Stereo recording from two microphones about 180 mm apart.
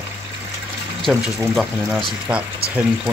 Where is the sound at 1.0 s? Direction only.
Centre (ahead or behind).